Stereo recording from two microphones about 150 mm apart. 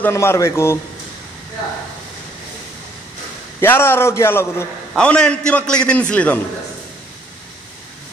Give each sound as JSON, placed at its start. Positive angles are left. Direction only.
{"t": 0.0, "sound": "a man's voice", "side_deg": 15}
{"t": 3.6, "sound": "a man's voice", "side_deg": 15}
{"t": 4.9, "sound": "a man's voice", "side_deg": 5}